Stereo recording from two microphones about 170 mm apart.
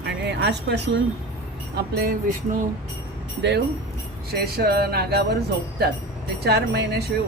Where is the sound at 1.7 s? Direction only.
60° right (ahead or behind).